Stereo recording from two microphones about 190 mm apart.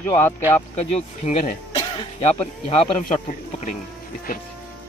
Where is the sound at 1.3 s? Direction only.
30° left (ahead or behind).